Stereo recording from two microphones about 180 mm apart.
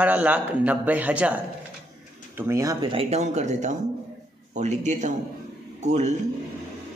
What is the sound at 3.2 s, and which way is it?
A man's voice, 40° right (ahead or behind).